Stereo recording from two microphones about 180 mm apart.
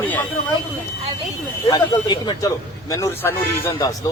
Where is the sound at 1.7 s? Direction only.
20° left (ahead or behind).